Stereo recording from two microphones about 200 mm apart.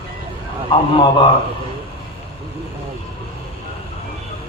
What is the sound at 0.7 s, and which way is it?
Speech, 25° left (ahead or behind).